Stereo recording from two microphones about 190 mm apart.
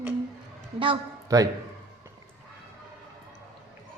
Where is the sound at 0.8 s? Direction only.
20° right (ahead or behind).